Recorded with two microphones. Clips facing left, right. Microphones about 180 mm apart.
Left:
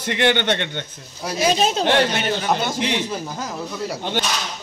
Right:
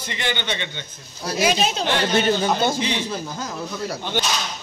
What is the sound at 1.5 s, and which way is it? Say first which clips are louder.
Speech: left 4 dB; 40° left (ahead or behind).